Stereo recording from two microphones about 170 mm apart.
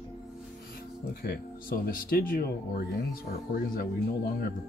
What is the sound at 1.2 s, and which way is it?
Speech, 60° left (ahead or behind).